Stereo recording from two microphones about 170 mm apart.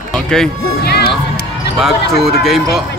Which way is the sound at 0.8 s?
70° left (ahead or behind).